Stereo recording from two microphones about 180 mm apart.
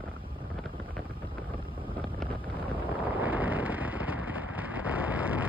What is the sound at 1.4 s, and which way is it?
Wind noise, 30° right (ahead or behind).